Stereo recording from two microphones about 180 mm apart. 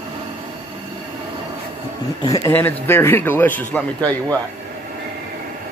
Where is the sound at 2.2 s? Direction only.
20° left (ahead or behind).